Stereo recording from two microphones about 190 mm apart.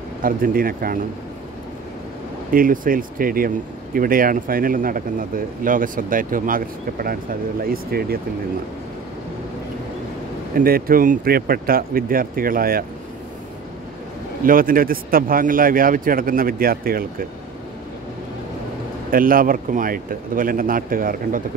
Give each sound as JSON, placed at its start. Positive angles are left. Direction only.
{"t": 0.2, "sound": "speech", "side_deg": -50}
{"t": 2.5, "sound": "speech", "side_deg": -45}
{"t": 10.5, "sound": "speech", "side_deg": -50}
{"t": 14.4, "sound": "speech", "side_deg": -50}
{"t": 19.0, "sound": "speech", "side_deg": -50}